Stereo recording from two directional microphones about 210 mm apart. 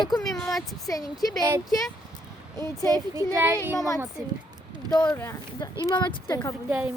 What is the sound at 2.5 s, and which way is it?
Speech, 15° left (ahead or behind).